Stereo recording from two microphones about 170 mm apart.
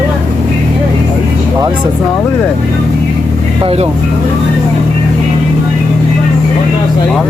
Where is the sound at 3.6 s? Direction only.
35° right (ahead or behind).